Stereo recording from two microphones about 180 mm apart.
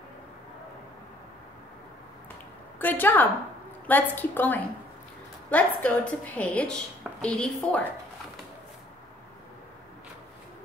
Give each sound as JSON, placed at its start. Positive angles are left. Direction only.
{"t": 2.8, "sound": "a woman's voice", "side_deg": 10}